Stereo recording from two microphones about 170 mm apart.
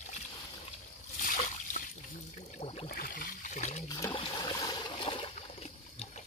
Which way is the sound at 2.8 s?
60° left (ahead or behind).